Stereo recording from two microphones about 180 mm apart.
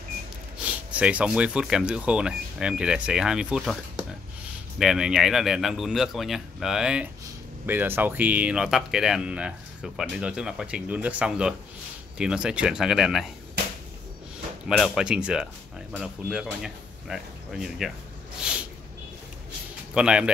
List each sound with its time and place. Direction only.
0.7 s speech: 5° right (ahead or behind)
14.7 s speech: centre (ahead or behind)
18.5 s a sound: 5° right (ahead or behind)
19.9 s speech: 5° right (ahead or behind)